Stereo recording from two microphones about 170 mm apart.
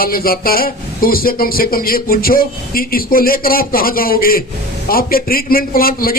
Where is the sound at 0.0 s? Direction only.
60° left (ahead or behind).